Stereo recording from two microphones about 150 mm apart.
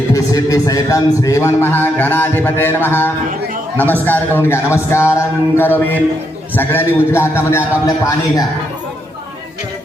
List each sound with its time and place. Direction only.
0.1 s a man's voice: 20° left (ahead or behind)